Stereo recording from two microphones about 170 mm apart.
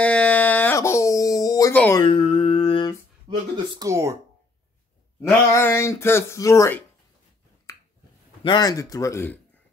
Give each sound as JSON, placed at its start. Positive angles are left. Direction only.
{"t": 0.0, "sound": "a sound", "side_deg": 10}
{"t": 1.7, "sound": "speech", "side_deg": 10}
{"t": 2.0, "sound": "a sound", "side_deg": 30}
{"t": 3.5, "sound": "speech", "side_deg": -25}
{"t": 5.5, "sound": "speech", "side_deg": 15}
{"t": 8.5, "sound": "speech", "side_deg": 20}